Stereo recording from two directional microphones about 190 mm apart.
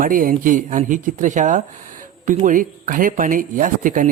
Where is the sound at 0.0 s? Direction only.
45° right (ahead or behind).